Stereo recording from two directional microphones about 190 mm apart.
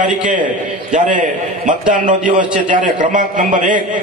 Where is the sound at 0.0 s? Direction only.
40° right (ahead or behind).